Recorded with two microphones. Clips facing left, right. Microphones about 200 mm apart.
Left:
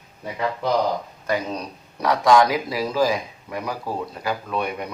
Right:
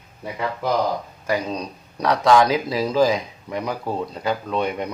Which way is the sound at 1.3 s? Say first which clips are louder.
Right 1 dB; 15° right (ahead or behind).